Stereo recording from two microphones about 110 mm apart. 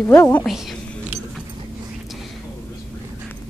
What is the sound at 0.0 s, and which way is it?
Speech, 20° left (ahead or behind).